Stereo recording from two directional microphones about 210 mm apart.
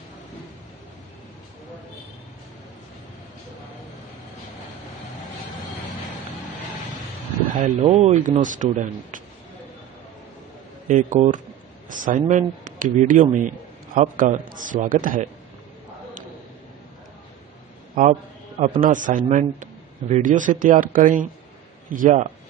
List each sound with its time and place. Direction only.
7.6 s a man's voice: 30° right (ahead or behind)
10.9 s a man's voice: 35° right (ahead or behind)
18.6 s a man's voice: 40° right (ahead or behind)